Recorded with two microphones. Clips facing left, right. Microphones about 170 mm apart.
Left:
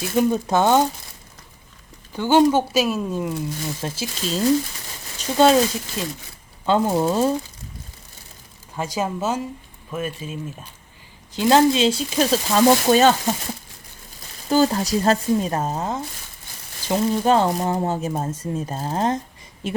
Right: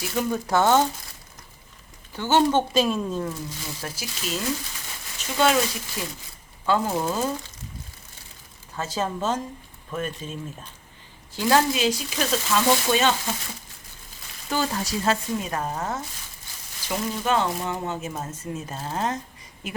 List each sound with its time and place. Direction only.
0.0 s speech: 20° left (ahead or behind)
2.1 s speech: 15° left (ahead or behind)
3.8 s speech: 25° left (ahead or behind)
8.7 s speech: 15° left (ahead or behind)
11.3 s speech: 20° left (ahead or behind); by 13.1 s 40° left (ahead or behind)
14.5 s speech: 35° left (ahead or behind); by 16.0 s 20° left (ahead or behind)
16.9 s speech: 35° left (ahead or behind)